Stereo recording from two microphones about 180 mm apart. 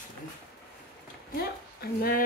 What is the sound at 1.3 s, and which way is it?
Speech, 55° left (ahead or behind).